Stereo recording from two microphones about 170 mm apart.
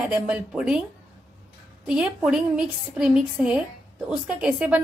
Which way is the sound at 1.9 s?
5° right (ahead or behind).